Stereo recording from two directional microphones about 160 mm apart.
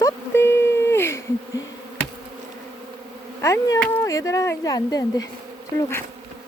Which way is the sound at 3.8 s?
15° left (ahead or behind).